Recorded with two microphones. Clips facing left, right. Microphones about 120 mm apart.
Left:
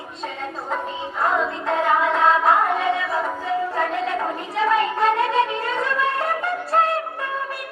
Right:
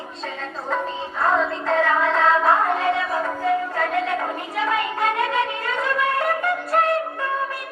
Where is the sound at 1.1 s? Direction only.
20° left (ahead or behind).